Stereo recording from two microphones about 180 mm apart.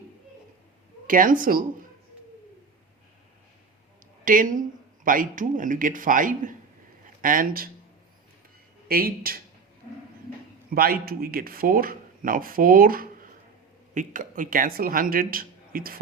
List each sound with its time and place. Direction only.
1.0 s speech: 50° right (ahead or behind)
4.3 s speech: 45° right (ahead or behind)
8.9 s speech: 55° right (ahead or behind)
10.7 s speech: 55° right (ahead or behind)